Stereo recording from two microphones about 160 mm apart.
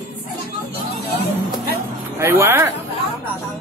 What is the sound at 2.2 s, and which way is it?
Speech, 15° right (ahead or behind).